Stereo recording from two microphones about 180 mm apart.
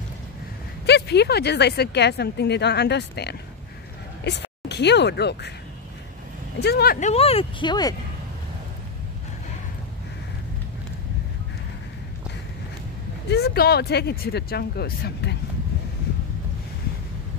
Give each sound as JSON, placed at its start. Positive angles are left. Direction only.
{"t": 0.8, "sound": "speech", "side_deg": 70}
{"t": 6.6, "sound": "speech", "side_deg": 60}
{"t": 7.0, "sound": "speech", "side_deg": 35}
{"t": 13.3, "sound": "speech", "side_deg": 65}